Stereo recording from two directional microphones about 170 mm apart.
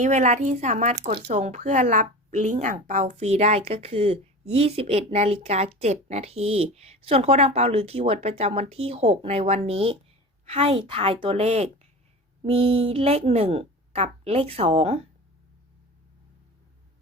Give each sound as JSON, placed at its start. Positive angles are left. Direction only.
{"t": 0.0, "sound": "speech", "side_deg": -45}